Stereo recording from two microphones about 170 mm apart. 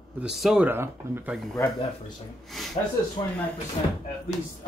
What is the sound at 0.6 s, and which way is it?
Speech, 15° right (ahead or behind).